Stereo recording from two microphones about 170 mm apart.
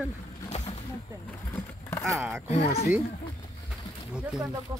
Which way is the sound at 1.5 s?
10° left (ahead or behind).